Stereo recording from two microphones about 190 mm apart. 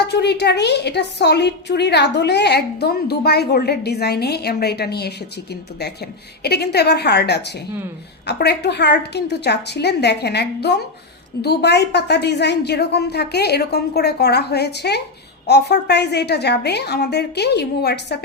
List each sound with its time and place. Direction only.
0.1 s a woman's voice: 60° left (ahead or behind)
6.4 s a woman's voice: 60° left (ahead or behind)